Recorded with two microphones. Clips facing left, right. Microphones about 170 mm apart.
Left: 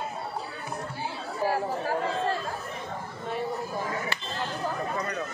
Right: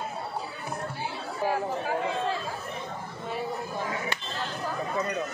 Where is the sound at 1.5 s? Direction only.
Centre (ahead or behind).